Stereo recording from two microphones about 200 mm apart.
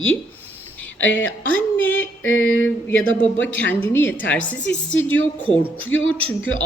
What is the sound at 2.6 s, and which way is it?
A woman's voice, 10° left (ahead or behind).